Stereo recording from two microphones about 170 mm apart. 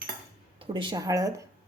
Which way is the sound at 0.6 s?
30° right (ahead or behind).